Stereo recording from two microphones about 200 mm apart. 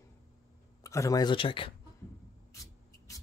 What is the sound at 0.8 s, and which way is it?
Speech, 15° left (ahead or behind).